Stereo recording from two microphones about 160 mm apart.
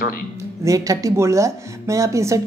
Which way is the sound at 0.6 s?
20° right (ahead or behind).